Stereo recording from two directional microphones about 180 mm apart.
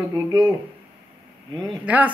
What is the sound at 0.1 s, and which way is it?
Speech, 20° right (ahead or behind).